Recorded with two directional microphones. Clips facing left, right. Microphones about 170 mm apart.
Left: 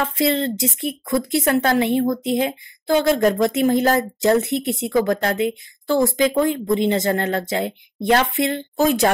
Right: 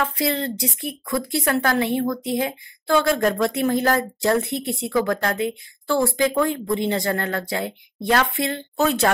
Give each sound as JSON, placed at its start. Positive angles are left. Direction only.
{"t": 0.0, "sound": "a woman's voice", "side_deg": 25}